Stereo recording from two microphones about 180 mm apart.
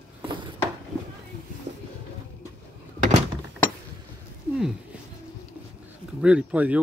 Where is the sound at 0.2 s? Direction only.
25° right (ahead or behind).